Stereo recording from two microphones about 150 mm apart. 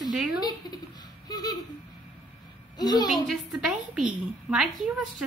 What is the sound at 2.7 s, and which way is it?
Speech, 25° left (ahead or behind).